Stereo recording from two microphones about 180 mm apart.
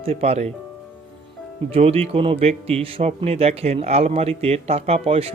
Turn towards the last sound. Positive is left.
turn(degrees=-35)  # may be behind; listen again after turning